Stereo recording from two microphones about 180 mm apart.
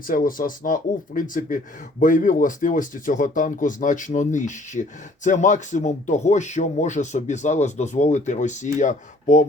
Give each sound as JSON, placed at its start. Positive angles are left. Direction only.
{"t": 0.1, "sound": "speech", "side_deg": 50}